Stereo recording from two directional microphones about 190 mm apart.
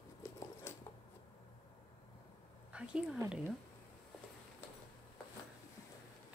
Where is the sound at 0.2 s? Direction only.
15° left (ahead or behind).